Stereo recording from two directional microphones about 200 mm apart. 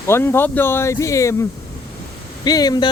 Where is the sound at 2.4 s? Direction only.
20° left (ahead or behind).